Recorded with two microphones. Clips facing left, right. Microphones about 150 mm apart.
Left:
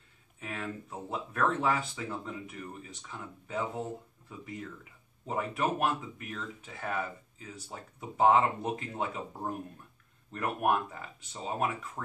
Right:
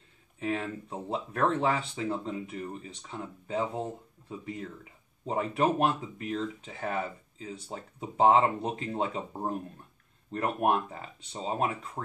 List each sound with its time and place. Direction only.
0.4 s speech: 30° right (ahead or behind)